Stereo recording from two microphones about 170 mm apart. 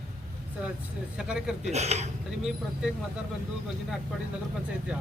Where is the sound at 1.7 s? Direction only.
40° right (ahead or behind).